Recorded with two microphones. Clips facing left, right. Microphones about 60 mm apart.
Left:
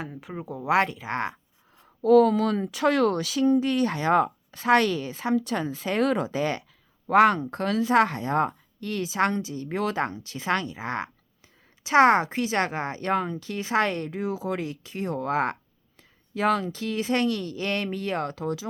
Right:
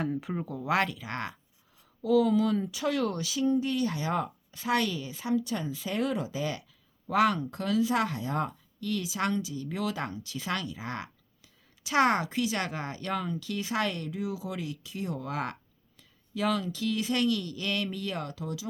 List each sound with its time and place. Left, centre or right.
0.0 s speech: centre
0.4 s speech: centre
1.8 s speech: left